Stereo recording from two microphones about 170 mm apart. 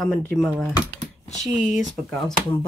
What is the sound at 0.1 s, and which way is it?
Speech, 5° left (ahead or behind).